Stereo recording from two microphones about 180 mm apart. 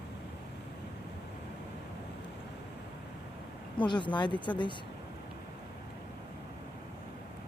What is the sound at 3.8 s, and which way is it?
Speech, 25° left (ahead or behind).